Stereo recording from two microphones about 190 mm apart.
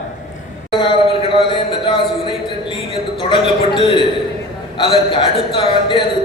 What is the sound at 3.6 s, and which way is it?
Speech, 25° left (ahead or behind).